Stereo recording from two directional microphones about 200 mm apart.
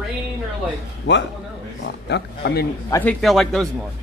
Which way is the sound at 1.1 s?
60° left (ahead or behind).